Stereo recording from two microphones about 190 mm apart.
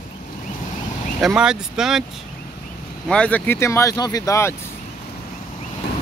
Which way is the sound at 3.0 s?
5° left (ahead or behind).